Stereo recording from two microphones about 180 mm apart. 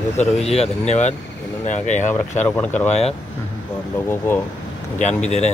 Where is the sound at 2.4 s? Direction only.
10° left (ahead or behind).